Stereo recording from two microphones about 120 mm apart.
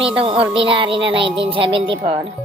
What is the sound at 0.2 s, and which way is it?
Speech, 45° right (ahead or behind).